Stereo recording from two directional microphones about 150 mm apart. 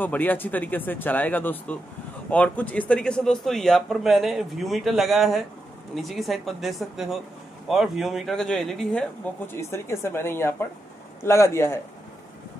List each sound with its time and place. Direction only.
0.0 s speech: 10° left (ahead or behind)